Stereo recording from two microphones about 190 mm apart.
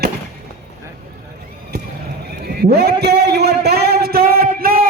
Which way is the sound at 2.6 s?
55° right (ahead or behind).